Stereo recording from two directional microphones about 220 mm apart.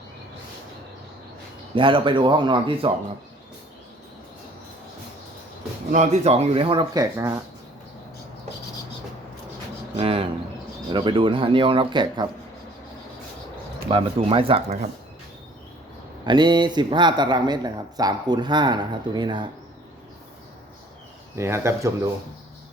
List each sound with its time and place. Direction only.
1.7 s a man's voice: 20° right (ahead or behind)
5.9 s a man's voice: 30° right (ahead or behind); by 7.3 s 15° right (ahead or behind)
10.0 s a man's voice: 25° right (ahead or behind)
13.8 s a man's voice: 25° right (ahead or behind)
16.2 s a man's voice: 20° right (ahead or behind)
21.3 s speech: 10° right (ahead or behind)